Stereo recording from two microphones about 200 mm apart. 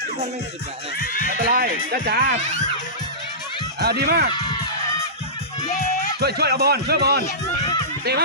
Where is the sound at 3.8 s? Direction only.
50° right (ahead or behind).